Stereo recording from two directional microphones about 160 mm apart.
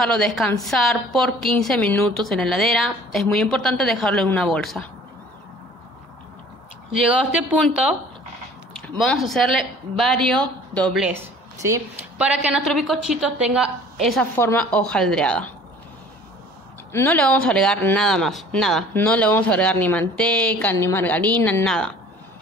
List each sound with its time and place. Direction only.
0.0 s a woman's voice: 5° left (ahead or behind)
6.9 s speech: 5° right (ahead or behind)
8.8 s a woman's voice: 5° left (ahead or behind)
11.1 s speech: 20° right (ahead or behind)
12.2 s a woman's voice: 5° right (ahead or behind)
14.3 s a woman's voice: 15° left (ahead or behind)
16.9 s a woman's voice: 10° left (ahead or behind)